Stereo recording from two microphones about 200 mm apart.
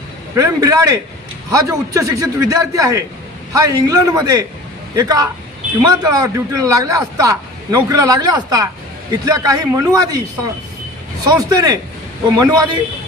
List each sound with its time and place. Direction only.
0.3 s a man's voice: 15° right (ahead or behind)
11.2 s a man's voice: 20° right (ahead or behind)